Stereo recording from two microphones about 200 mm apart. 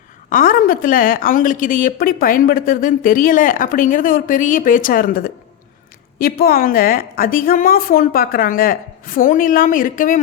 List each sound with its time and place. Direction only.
0.3 s a woman's voice: 45° left (ahead or behind)